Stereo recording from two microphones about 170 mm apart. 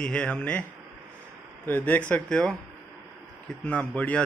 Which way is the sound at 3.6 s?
10° left (ahead or behind).